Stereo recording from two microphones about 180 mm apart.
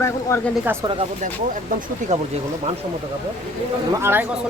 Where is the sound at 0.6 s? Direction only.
10° right (ahead or behind).